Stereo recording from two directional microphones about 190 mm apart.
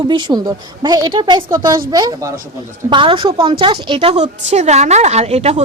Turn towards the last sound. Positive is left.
turn(degrees=-35)  # may be behind; listen again after turning